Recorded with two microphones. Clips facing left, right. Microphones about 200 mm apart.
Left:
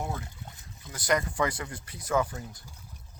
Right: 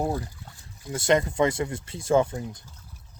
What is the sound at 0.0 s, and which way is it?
Speech, 35° right (ahead or behind).